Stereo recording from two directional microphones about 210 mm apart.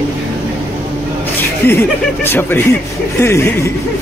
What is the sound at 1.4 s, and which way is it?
Speech, 10° left (ahead or behind).